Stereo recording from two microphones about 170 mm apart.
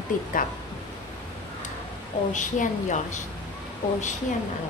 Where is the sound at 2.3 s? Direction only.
45° left (ahead or behind).